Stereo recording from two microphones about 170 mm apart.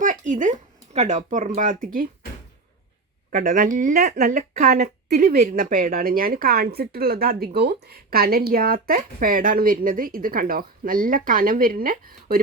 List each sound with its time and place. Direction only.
0.0 s a sound: 50° right (ahead or behind)
0.9 s speech: 45° right (ahead or behind)
3.3 s speech: 50° right (ahead or behind)